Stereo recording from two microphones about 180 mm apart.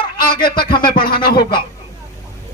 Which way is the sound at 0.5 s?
25° left (ahead or behind).